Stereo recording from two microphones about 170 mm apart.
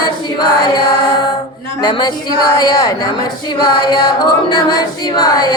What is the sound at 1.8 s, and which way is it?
Speech, 25° left (ahead or behind).